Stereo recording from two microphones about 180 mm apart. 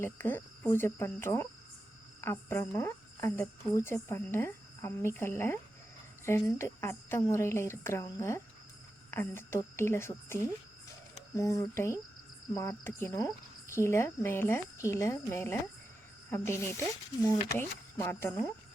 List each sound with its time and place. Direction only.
0.0 s speech: 10° left (ahead or behind)
6.6 s speech: 15° left (ahead or behind)